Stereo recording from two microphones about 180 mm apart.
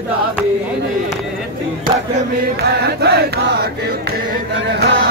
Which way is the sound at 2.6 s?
65° right (ahead or behind).